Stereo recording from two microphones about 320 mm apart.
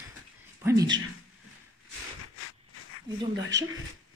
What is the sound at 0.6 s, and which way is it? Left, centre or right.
Speech, centre.